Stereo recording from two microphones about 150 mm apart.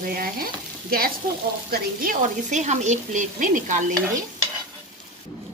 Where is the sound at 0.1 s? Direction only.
75° right (ahead or behind).